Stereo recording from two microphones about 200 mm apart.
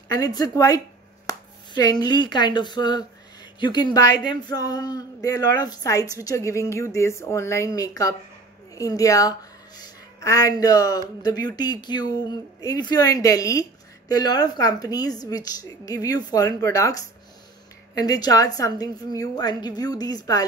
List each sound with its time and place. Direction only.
0.1 s speech: 20° left (ahead or behind)